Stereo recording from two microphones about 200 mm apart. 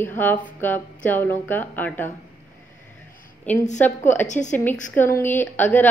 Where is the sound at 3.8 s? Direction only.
10° left (ahead or behind).